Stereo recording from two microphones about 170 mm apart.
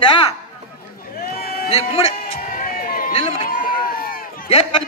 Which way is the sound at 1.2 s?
65° left (ahead or behind).